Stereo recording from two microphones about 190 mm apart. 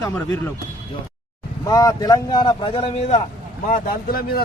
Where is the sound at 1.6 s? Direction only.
20° left (ahead or behind); by 3.2 s 35° left (ahead or behind).